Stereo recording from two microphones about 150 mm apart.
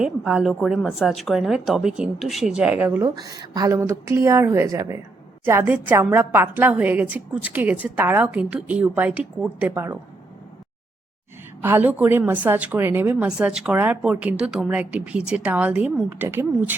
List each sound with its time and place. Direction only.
0.0 s a woman's voice: 5° right (ahead or behind)
3.0 s a woman's voice: 25° right (ahead or behind)
11.6 s a woman's voice: 10° right (ahead or behind)